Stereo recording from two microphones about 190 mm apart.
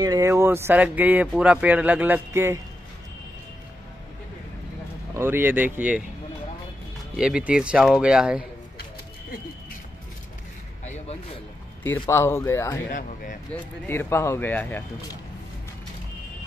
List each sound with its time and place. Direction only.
0.0 s speech: 20° right (ahead or behind)
5.1 s speech: 10° right (ahead or behind)
7.2 s speech: 5° right (ahead or behind)
10.8 s a sound: 40° left (ahead or behind)
11.8 s speech: 10° left (ahead or behind)
12.9 s speech: 45° left (ahead or behind)
13.8 s speech: 15° left (ahead or behind)